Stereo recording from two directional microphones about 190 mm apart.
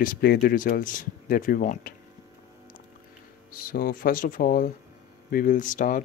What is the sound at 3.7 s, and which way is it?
Speech, 50° left (ahead or behind).